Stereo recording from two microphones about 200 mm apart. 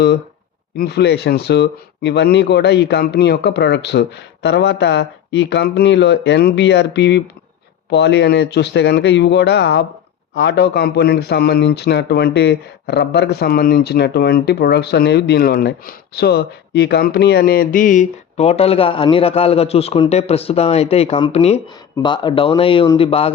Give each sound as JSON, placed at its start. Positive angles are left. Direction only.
{"t": 0.8, "sound": "speech", "side_deg": 55}